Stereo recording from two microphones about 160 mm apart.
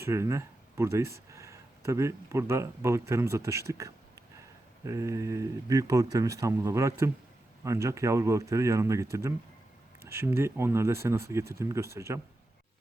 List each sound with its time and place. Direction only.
0.0 s speech: 15° right (ahead or behind)